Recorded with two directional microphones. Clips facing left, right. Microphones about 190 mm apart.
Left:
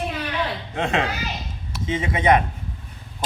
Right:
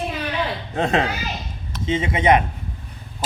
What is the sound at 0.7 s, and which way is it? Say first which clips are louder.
Speech: right 4 dB; 35° right (ahead or behind).